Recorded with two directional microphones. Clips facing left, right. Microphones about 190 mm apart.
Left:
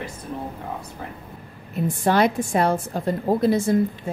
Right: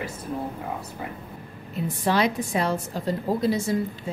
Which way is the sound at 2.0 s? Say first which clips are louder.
Left 3 dB; 50° left (ahead or behind).